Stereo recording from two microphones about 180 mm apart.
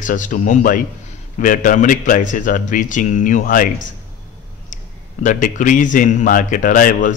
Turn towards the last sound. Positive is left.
turn(degrees=50)  # may be behind; listen again after turning